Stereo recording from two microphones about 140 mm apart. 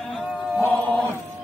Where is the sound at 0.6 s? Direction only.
10° left (ahead or behind).